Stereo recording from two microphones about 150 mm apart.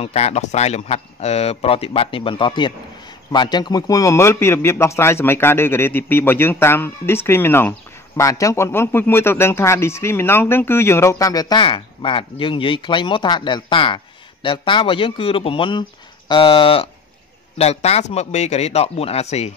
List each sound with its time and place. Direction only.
0.0 s a man's voice: 45° left (ahead or behind)